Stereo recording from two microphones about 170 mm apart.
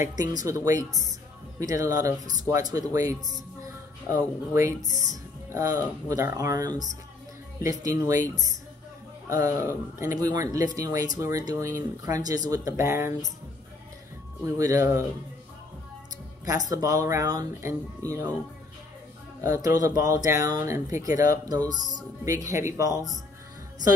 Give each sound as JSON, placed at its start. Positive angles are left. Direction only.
{"t": 0.2, "sound": "a woman's voice", "side_deg": -20}
{"t": 14.4, "sound": "speech", "side_deg": -20}
{"t": 16.4, "sound": "speech", "side_deg": -20}
{"t": 19.4, "sound": "speech", "side_deg": -20}